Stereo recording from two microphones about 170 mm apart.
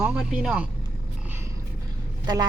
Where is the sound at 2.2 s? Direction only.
25° right (ahead or behind).